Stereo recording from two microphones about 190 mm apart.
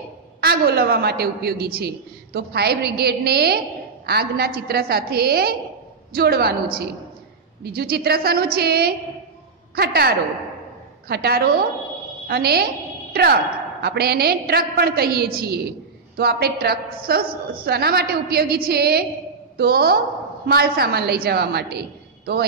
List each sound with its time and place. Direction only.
0.4 s a man's voice: 55° right (ahead or behind)